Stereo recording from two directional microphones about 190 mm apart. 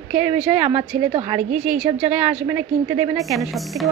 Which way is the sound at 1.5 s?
5° right (ahead or behind).